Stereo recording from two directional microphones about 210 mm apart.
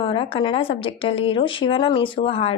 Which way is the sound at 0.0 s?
25° left (ahead or behind).